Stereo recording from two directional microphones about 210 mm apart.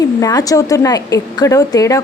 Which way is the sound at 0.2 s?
15° left (ahead or behind).